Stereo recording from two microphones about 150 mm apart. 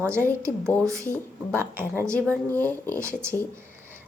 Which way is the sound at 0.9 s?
20° right (ahead or behind).